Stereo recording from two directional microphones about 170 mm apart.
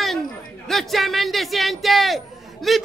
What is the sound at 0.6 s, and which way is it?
A man's voice, centre (ahead or behind).